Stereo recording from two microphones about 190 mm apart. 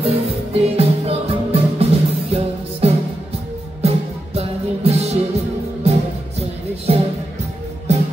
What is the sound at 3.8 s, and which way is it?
Music, 35° right (ahead or behind).